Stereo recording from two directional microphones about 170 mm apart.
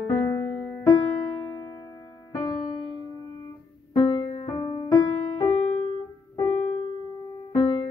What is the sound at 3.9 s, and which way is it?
Music, 35° left (ahead or behind).